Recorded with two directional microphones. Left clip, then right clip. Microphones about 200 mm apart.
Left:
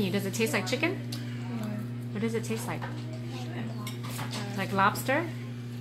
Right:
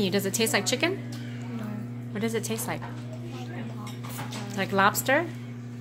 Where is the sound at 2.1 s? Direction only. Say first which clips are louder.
Right 3 dB; 20° right (ahead or behind).